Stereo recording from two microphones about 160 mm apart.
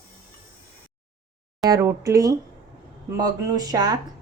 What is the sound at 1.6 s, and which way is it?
Speech, 20° right (ahead or behind).